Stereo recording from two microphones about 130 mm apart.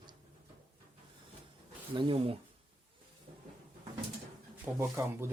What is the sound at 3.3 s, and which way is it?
Cupboard open or close, 80° right.